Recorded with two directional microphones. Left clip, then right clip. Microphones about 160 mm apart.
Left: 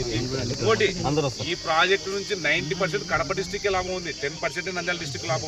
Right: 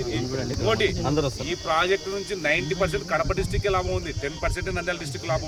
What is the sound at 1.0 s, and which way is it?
Speech, 20° left (ahead or behind).